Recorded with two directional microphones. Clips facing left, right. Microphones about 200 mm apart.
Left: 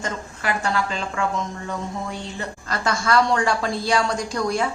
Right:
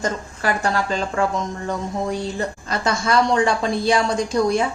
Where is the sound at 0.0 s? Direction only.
40° right (ahead or behind).